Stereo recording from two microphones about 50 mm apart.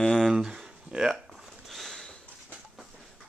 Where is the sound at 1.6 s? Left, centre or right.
Centre.